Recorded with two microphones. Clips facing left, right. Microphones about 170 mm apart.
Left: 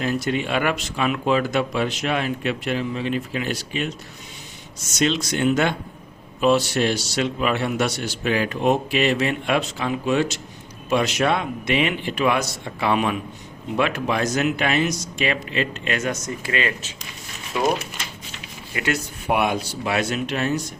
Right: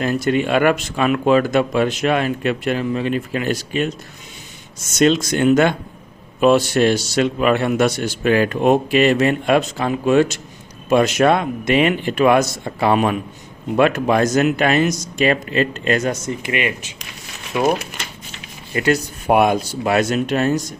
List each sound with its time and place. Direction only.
0.0 s a man's voice: 50° right (ahead or behind)
4.9 s a man's voice: 50° right (ahead or behind)
16.4 s speech: 15° right (ahead or behind)
18.7 s a man's voice: 40° right (ahead or behind)